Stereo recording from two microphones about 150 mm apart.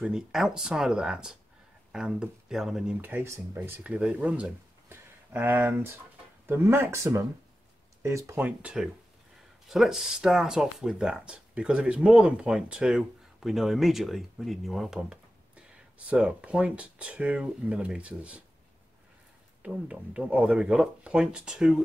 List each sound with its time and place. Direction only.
0.0 s speech: centre (ahead or behind)
19.6 s speech: 5° right (ahead or behind)